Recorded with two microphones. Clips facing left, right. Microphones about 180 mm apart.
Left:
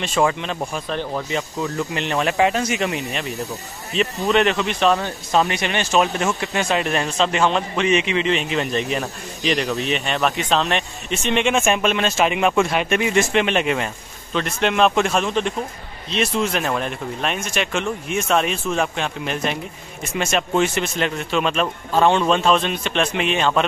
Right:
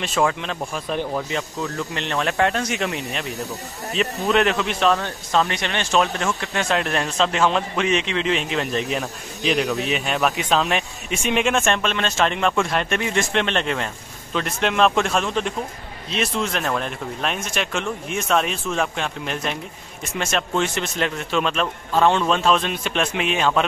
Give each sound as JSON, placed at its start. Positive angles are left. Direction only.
{"t": 0.0, "sound": "speech", "side_deg": 0}